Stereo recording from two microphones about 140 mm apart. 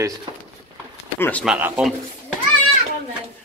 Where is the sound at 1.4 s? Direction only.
5° right (ahead or behind).